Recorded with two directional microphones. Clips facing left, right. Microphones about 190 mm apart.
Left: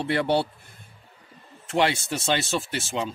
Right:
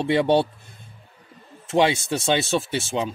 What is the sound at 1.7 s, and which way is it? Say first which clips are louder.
Speech: right 4 dB; 15° right (ahead or behind).